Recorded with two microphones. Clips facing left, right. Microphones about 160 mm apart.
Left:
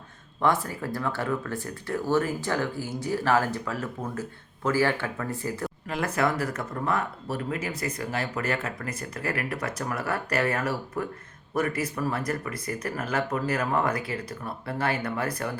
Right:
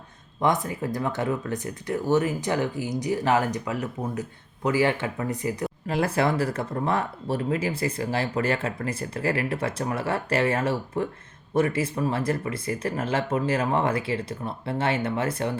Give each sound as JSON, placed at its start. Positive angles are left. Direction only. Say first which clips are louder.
{"t": 0.4, "sound": "speech", "louder": "right 1 dB", "side_deg": -20}
{"t": 5.9, "sound": "speech", "louder": "right 3 dB", "side_deg": -30}